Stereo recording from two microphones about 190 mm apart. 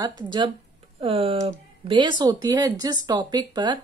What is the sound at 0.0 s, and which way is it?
Speech, 25° right (ahead or behind).